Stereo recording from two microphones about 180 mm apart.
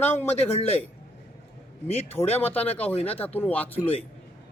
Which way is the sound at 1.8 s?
35° left (ahead or behind).